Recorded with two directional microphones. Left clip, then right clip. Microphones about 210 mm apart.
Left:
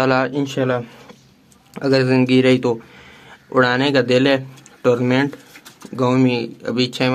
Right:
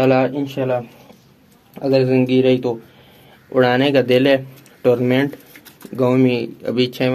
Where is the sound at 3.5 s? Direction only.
10° left (ahead or behind).